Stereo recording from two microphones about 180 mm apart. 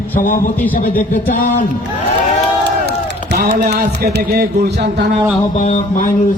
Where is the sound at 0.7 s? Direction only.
50° left (ahead or behind).